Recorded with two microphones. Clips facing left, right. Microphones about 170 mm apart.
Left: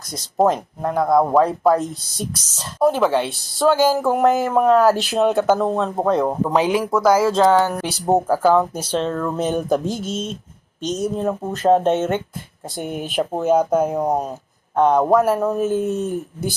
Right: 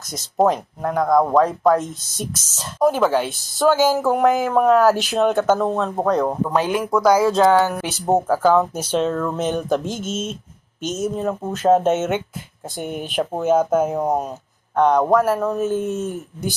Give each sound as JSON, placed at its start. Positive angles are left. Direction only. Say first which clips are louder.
{"t": 0.3, "sound": "speech", "louder": "even", "side_deg": 0}
{"t": 6.4, "sound": "speech", "louder": "left 2 dB", "side_deg": 15}
{"t": 8.1, "sound": "speech", "louder": "even", "side_deg": 10}
{"t": 8.9, "sound": "speech", "louder": "right 1 dB", "side_deg": -5}
{"t": 9.8, "sound": "speech", "louder": "left 2 dB", "side_deg": 35}
{"t": 10.8, "sound": "speech", "louder": "left 1 dB", "side_deg": -5}
{"t": 16.0, "sound": "speech", "louder": "left 2 dB", "side_deg": 35}